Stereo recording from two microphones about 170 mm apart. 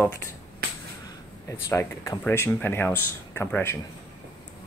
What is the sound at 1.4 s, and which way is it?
Speech, 15° left (ahead or behind).